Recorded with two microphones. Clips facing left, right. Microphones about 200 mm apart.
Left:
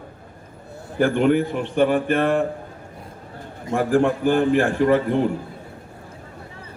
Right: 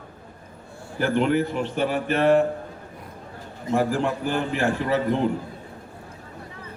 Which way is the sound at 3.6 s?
50° left (ahead or behind).